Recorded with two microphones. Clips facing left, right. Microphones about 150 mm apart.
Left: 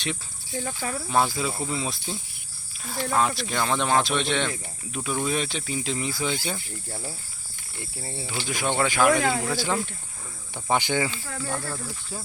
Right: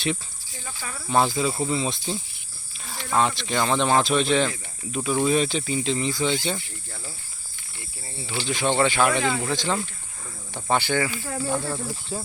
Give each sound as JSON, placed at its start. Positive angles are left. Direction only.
{"t": 0.5, "sound": "speech", "side_deg": 55}
{"t": 1.1, "sound": "speech", "side_deg": 0}
{"t": 6.6, "sound": "speech", "side_deg": 45}
{"t": 8.1, "sound": "speech", "side_deg": 15}
{"t": 11.4, "sound": "speech", "side_deg": -10}
{"t": 11.9, "sound": "speech", "side_deg": -25}